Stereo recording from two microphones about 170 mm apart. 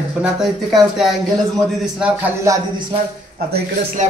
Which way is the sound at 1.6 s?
5° right (ahead or behind).